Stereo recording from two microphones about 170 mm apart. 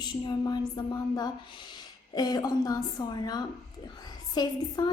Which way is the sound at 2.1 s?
20° left (ahead or behind).